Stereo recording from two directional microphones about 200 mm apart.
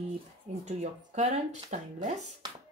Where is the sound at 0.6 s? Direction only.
35° right (ahead or behind).